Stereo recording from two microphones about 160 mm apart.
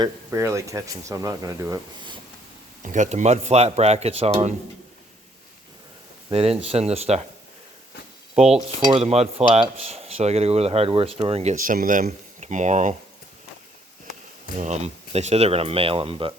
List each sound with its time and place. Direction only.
0.3 s speech: 15° right (ahead or behind)
2.8 s speech: 50° right (ahead or behind)
6.3 s speech: 35° right (ahead or behind)
8.4 s cutlery: centre (ahead or behind)
8.9 s speech: 40° right (ahead or behind)
11.6 s speech: 55° right (ahead or behind)
14.6 s speech: 45° right (ahead or behind)